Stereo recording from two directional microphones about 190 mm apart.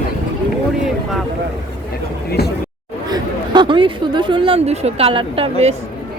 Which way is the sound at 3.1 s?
25° right (ahead or behind).